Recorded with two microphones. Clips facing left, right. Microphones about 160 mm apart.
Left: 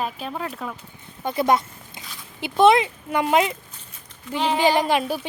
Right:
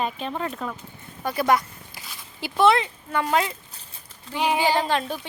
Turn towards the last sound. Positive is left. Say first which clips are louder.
# left 3 dB
turn(degrees=10)  # may be behind; listen again after turning